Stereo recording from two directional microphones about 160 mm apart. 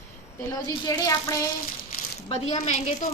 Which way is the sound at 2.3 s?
40° left (ahead or behind).